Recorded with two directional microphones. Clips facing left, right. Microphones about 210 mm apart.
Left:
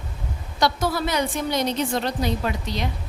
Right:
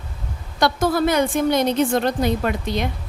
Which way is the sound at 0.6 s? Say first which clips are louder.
Right 4 dB; 50° right (ahead or behind).